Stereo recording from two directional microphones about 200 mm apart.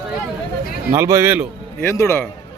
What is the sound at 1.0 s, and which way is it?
Speech, 15° right (ahead or behind).